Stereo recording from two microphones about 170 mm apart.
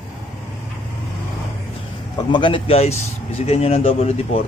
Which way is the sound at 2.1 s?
30° left (ahead or behind).